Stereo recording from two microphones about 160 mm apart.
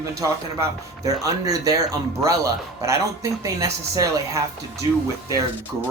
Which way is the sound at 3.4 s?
20° right (ahead or behind).